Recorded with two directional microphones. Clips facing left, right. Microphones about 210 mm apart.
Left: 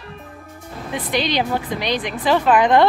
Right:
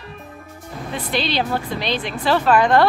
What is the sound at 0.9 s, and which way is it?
Speech, 15° left (ahead or behind).